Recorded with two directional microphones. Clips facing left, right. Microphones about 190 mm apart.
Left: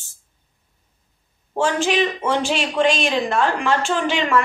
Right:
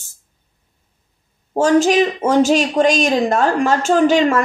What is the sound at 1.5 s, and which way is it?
Speech, 40° right (ahead or behind).